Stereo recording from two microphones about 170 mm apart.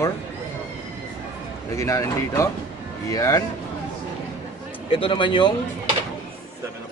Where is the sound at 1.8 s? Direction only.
15° left (ahead or behind).